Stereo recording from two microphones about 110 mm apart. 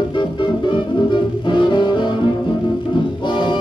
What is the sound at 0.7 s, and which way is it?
Music, 45° left (ahead or behind).